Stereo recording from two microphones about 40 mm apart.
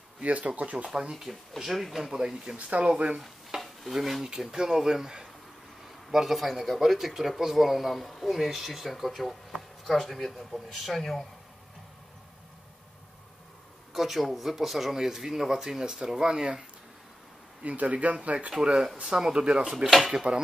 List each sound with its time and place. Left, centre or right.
0.2 s speech: right
0.8 s speech: right
1.1 s speech: centre
2.5 s speech: right
3.2 s stir: centre
5.9 s speech: centre
13.9 s speech: centre
17.6 s speech: right
18.7 s speech: centre
19.1 s speech: centre
19.7 s speech: centre
20.1 s speech: centre